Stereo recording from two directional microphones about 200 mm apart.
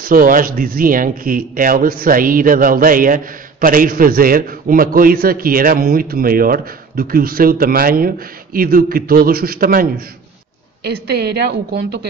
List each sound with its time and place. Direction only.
0.0 s a man's voice: 45° right (ahead or behind)